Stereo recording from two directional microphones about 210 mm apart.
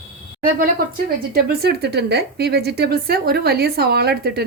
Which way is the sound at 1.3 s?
45° right (ahead or behind).